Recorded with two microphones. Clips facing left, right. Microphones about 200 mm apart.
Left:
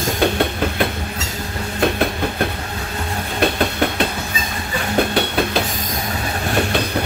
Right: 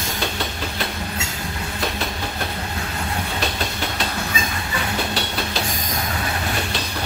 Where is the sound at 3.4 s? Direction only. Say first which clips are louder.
Left 8 dB; 55° left (ahead or behind).